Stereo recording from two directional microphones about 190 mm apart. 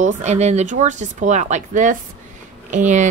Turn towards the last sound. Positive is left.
turn(degrees=-40)  # may be behind; listen again after turning